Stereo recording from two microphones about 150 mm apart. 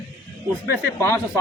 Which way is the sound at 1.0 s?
20° left (ahead or behind).